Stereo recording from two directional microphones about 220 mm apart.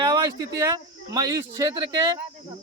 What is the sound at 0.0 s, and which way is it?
Speech, 20° right (ahead or behind).